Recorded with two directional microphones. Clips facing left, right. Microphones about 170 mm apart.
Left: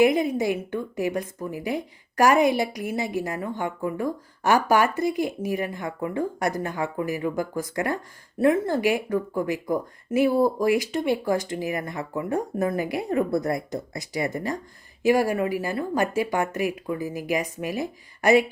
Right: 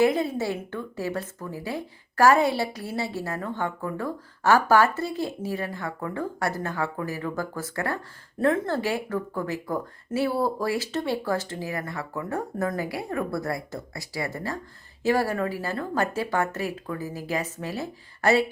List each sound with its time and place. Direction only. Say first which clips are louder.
0.0 s a woman's voice: left 3 dB; 15° left (ahead or behind)